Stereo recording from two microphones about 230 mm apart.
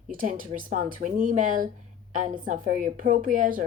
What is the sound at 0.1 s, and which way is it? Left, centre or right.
A woman's voice, right.